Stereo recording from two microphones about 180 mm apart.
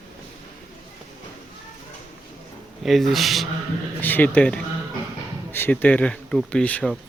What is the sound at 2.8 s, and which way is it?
Speech, centre (ahead or behind).